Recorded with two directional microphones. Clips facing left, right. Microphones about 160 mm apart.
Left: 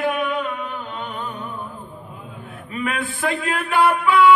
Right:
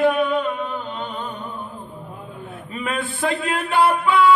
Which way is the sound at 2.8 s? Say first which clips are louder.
Even; 25° right (ahead or behind).